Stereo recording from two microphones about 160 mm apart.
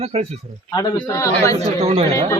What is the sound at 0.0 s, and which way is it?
Speech, 40° right (ahead or behind).